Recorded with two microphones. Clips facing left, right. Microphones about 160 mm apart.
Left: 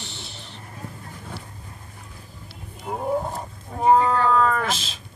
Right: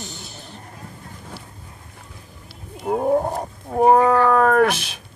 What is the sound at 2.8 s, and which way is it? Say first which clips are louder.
Wild animals: right 6 dB; 55° right (ahead or behind).